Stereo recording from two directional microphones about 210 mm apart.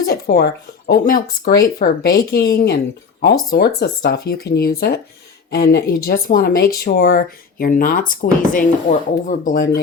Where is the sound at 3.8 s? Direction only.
50° left (ahead or behind).